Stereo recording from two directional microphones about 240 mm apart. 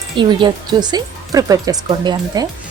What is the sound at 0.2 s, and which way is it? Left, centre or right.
Speech, centre.